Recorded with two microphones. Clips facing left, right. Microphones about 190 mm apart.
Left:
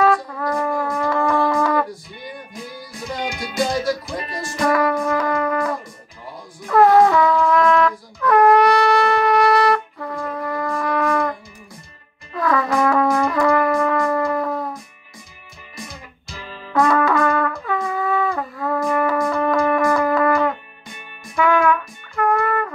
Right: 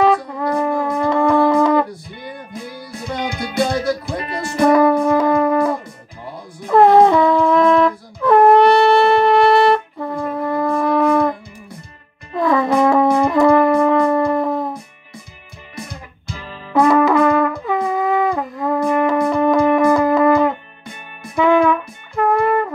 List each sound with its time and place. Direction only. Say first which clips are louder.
0.0 s wind instrument: right 2 dB; 20° right (ahead or behind)
3.3 s music: right 3 dB; 60° right (ahead or behind)
4.6 s music: right 6 dB; 25° right (ahead or behind)
6.7 s wind instrument: right 3 dB; 25° right (ahead or behind)
12.4 s brass instrument: right 4 dB; 25° right (ahead or behind)
16.7 s brass instrument: right 4 dB; 20° right (ahead or behind)
21.4 s music: right 3 dB; 25° right (ahead or behind)